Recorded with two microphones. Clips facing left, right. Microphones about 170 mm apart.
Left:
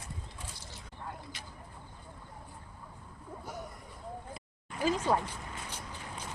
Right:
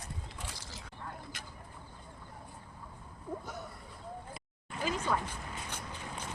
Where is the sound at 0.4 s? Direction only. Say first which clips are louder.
Right 2 dB; 90° right.